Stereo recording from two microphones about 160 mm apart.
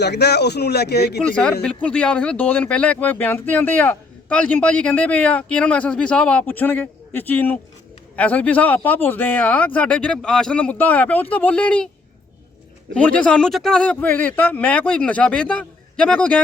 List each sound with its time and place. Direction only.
0.0 s speech: 90° left
1.3 s a man's voice: 5° left (ahead or behind)
12.9 s speech: 5° left (ahead or behind)